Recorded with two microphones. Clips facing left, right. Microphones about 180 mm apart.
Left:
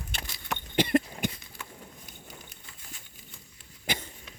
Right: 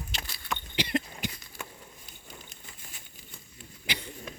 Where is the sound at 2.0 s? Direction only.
10° left (ahead or behind).